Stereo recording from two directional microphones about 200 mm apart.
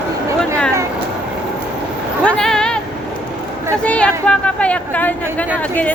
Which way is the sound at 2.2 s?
5° left (ahead or behind).